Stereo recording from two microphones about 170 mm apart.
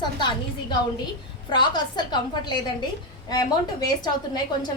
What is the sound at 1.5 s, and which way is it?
A woman's voice, 25° left (ahead or behind).